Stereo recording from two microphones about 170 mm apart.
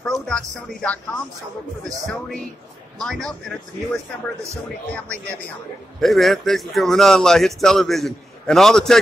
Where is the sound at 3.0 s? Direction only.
5° left (ahead or behind).